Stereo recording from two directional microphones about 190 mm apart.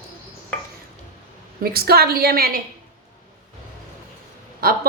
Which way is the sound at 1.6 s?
55° right (ahead or behind).